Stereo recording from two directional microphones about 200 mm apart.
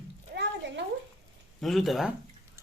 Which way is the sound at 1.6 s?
Centre (ahead or behind).